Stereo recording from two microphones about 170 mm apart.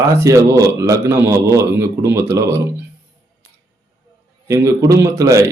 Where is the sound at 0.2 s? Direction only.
15° right (ahead or behind).